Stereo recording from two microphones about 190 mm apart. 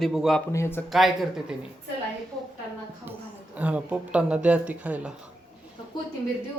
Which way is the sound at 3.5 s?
10° right (ahead or behind).